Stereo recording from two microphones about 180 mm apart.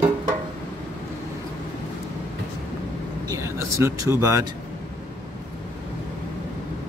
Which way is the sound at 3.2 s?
15° right (ahead or behind).